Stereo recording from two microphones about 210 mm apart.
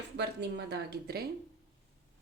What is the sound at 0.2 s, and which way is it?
A woman's voice, 55° right (ahead or behind).